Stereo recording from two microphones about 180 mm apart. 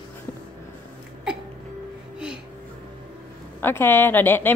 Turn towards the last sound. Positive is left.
turn(degrees=10)  # may be behind; listen again after turning